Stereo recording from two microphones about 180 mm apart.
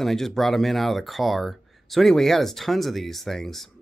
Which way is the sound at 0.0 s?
Centre (ahead or behind).